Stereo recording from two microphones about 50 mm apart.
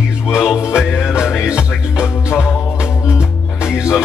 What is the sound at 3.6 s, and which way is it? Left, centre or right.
Music, centre.